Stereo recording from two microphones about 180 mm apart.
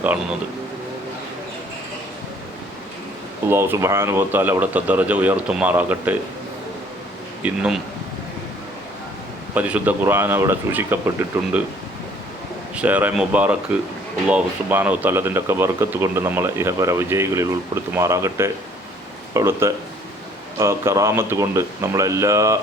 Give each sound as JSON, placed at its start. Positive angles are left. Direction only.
{"t": 3.5, "sound": "speech", "side_deg": -15}
{"t": 7.4, "sound": "speech", "side_deg": -5}
{"t": 9.6, "sound": "speech", "side_deg": -10}
{"t": 12.7, "sound": "speech", "side_deg": -10}